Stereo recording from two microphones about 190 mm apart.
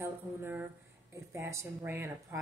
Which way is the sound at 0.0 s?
10° right (ahead or behind).